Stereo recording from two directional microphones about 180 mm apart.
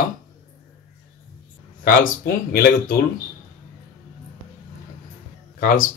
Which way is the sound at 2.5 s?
55° left (ahead or behind).